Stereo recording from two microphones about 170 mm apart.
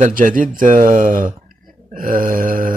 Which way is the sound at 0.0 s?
55° right (ahead or behind).